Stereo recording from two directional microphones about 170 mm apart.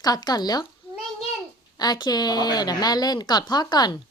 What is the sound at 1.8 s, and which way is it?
Speech, 25° left (ahead or behind).